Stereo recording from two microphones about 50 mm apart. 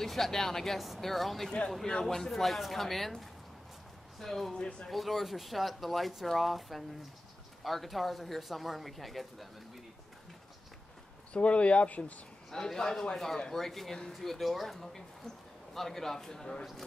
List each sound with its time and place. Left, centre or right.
0.0 s speech: centre
4.6 s speech: left
4.8 s speech: centre
11.3 s speech: left
12.4 s speech: centre